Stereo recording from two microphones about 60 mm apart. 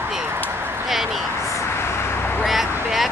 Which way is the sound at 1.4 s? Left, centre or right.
Left.